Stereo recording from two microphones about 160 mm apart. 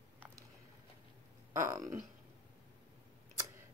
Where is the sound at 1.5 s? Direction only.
20° right (ahead or behind).